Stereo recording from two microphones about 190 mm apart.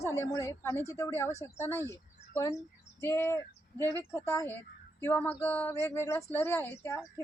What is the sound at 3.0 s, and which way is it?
A woman's voice, 15° left (ahead or behind).